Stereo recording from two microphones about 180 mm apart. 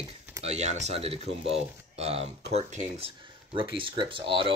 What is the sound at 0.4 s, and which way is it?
Speech, 35° right (ahead or behind).